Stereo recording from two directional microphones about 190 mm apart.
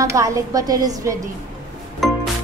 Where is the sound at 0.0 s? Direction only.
15° right (ahead or behind).